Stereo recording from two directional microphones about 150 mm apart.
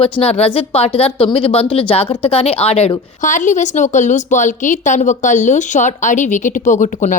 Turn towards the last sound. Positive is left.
turn(degrees=55)  # may be behind; listen again after turning